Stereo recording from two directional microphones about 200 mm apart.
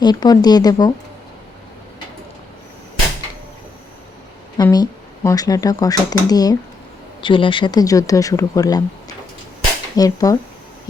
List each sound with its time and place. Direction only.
0.0 s speech: 20° left (ahead or behind)
4.5 s speech: 20° left (ahead or behind)